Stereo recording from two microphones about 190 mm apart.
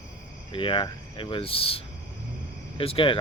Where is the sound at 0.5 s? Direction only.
25° left (ahead or behind).